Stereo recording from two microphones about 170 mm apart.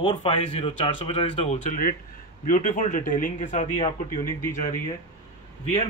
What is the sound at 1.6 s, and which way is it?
Speech, 55° left (ahead or behind).